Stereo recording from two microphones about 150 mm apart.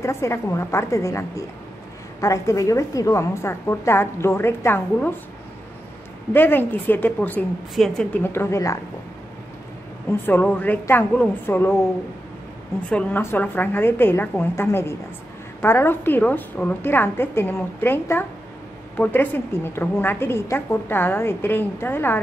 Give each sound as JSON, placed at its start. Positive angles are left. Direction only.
{"t": 0.0, "sound": "a woman's voice", "side_deg": 20}
{"t": 6.3, "sound": "a woman's voice", "side_deg": 15}
{"t": 10.2, "sound": "a woman's voice", "side_deg": 10}
{"t": 12.9, "sound": "a woman's voice", "side_deg": 15}